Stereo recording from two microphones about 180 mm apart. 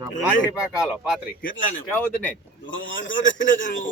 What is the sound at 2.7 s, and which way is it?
Speech, 90° left.